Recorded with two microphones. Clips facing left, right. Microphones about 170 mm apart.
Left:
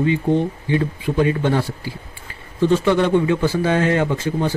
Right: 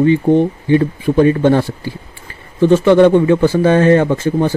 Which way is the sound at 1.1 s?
50° right (ahead or behind).